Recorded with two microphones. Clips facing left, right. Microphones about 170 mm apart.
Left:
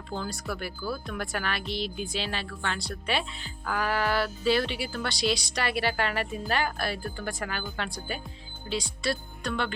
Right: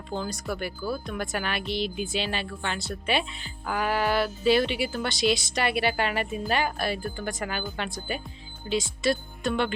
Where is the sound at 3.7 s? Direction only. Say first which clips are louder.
Right 2 dB; 15° right (ahead or behind).